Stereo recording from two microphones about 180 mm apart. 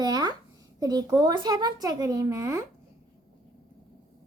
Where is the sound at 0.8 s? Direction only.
20° right (ahead or behind).